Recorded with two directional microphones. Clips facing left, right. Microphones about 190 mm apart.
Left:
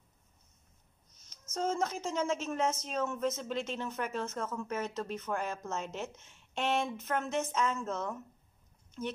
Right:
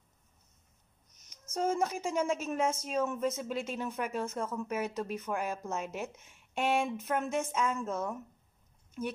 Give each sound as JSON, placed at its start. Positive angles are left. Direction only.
{"t": 1.5, "sound": "a woman's voice", "side_deg": -15}